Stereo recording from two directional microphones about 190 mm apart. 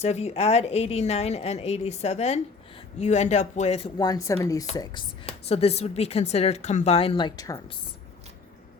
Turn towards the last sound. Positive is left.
turn(degrees=20)  # may be behind; listen again after turning